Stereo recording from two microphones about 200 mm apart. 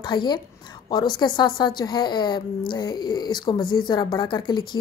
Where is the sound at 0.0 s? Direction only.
20° left (ahead or behind).